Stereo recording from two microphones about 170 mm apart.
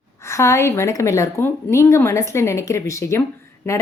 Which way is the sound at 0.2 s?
15° left (ahead or behind).